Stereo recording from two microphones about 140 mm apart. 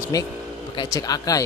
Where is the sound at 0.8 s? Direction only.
25° left (ahead or behind).